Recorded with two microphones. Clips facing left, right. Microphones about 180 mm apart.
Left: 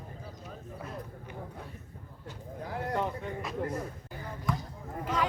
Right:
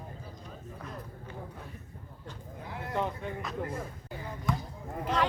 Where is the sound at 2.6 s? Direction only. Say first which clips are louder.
Left 5 dB; 40° left (ahead or behind).